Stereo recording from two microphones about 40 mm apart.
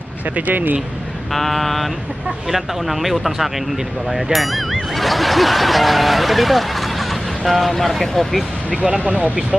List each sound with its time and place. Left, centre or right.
0.5 s speech: right
1.3 s speech: centre
9.0 s speech: right